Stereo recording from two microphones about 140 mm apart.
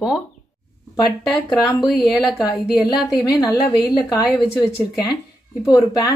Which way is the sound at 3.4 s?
30° left (ahead or behind).